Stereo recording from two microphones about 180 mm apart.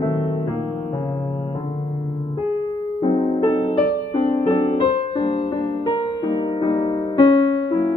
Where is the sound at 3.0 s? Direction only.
20° left (ahead or behind).